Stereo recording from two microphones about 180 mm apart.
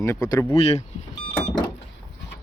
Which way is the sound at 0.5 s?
35° left (ahead or behind).